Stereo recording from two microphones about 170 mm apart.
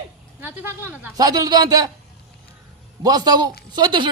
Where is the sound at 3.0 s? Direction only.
20° right (ahead or behind).